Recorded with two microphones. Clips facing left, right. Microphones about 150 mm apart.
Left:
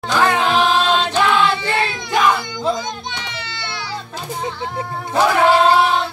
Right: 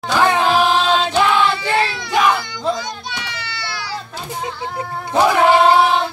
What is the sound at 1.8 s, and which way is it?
Crowd, 20° left (ahead or behind).